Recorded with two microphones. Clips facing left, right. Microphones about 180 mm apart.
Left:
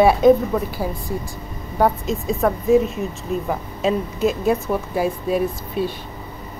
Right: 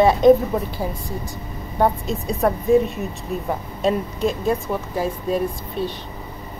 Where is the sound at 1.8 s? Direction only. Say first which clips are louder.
Left 1 dB; centre (ahead or behind).